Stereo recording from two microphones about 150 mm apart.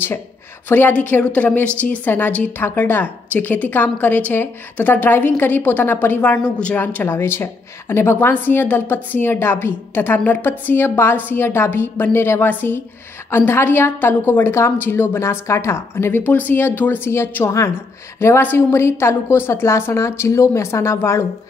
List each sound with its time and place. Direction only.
0.7 s a woman's voice: 10° left (ahead or behind)